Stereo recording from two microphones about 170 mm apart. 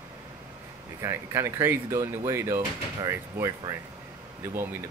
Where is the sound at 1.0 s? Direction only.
15° right (ahead or behind).